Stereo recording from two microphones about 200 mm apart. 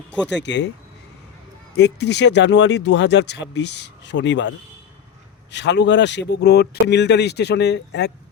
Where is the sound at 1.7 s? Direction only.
60° left (ahead or behind).